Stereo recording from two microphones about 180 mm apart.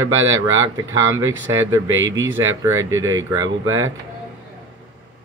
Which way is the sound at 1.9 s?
90° right.